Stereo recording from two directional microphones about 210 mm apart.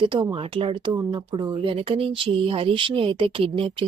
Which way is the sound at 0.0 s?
25° right (ahead or behind).